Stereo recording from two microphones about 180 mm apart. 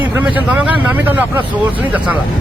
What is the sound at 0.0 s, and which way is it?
Speech, 10° right (ahead or behind).